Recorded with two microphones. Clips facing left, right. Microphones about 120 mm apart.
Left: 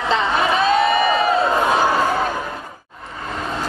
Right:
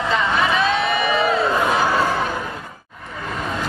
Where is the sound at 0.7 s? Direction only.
40° left (ahead or behind).